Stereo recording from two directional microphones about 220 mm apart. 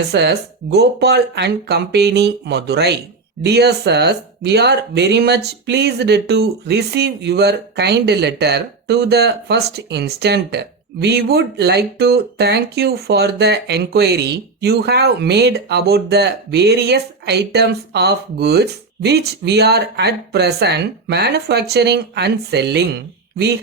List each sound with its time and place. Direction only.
0.1 s speech: 50° right (ahead or behind)